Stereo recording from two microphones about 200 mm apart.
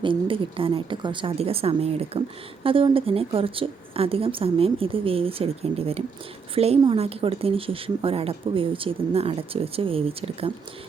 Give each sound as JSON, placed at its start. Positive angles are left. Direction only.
{"t": 0.0, "sound": "speech", "side_deg": -25}